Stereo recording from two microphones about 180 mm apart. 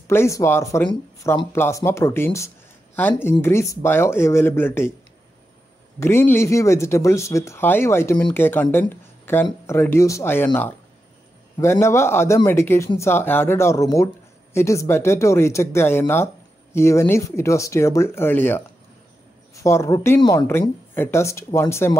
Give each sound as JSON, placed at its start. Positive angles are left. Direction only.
{"t": 0.1, "sound": "a man's voice", "side_deg": 15}
{"t": 5.9, "sound": "a man's voice", "side_deg": 15}